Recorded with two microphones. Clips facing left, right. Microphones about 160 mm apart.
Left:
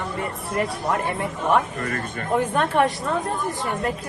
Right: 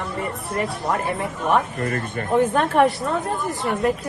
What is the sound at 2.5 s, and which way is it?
Speech, centre (ahead or behind).